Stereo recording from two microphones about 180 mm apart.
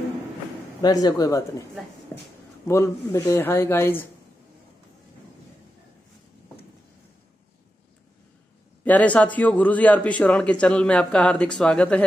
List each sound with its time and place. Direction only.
0.8 s speech: 20° left (ahead or behind)
2.1 s a sound: 15° left (ahead or behind)
2.7 s speech: 15° left (ahead or behind)
8.8 s speech: 10° left (ahead or behind)